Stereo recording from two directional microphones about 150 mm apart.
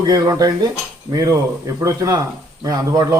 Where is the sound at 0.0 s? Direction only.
25° right (ahead or behind).